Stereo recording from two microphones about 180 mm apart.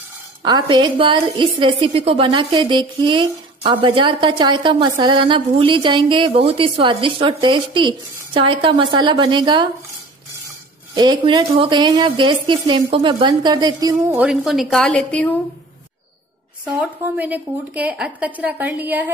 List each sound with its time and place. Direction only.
0.4 s a woman's voice: 25° right (ahead or behind)
11.0 s a woman's voice: 25° right (ahead or behind)
14.2 s a woman's voice: centre (ahead or behind)
16.6 s a woman's voice: 10° right (ahead or behind)